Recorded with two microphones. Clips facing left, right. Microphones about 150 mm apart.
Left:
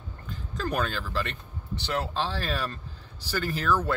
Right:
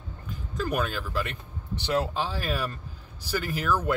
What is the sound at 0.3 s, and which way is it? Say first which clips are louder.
Speech: right 1 dB; 10° right (ahead or behind).